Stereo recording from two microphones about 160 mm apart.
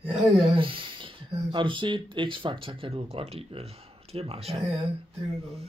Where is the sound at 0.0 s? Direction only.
5° right (ahead or behind).